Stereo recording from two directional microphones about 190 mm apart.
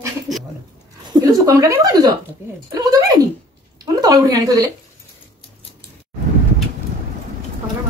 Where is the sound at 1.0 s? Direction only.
20° right (ahead or behind).